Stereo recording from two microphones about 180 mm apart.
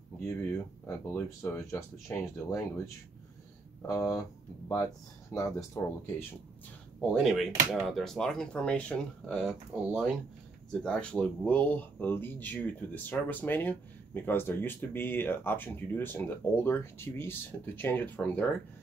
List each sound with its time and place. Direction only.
0.8 s speech: 15° left (ahead or behind)
5.3 s speech: 10° left (ahead or behind)
7.0 s speech: centre (ahead or behind)